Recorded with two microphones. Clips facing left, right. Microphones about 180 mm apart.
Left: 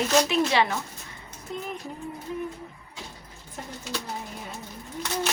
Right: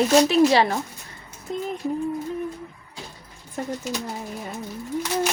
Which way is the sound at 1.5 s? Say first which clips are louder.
Right 6 dB; 35° right (ahead or behind).